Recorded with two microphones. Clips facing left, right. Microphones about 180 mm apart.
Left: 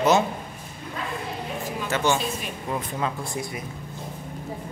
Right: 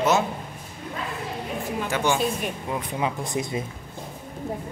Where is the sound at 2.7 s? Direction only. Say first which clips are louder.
Left 1 dB; 15° right (ahead or behind).